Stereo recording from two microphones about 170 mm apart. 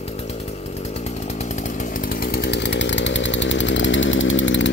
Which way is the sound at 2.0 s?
60° left (ahead or behind).